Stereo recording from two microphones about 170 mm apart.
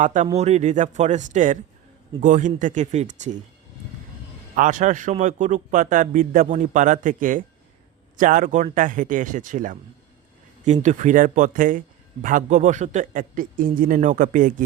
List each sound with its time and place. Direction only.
0.0 s a man's voice: 45° right (ahead or behind)
4.5 s a man's voice: 50° right (ahead or behind)
10.8 s a man's voice: 45° right (ahead or behind)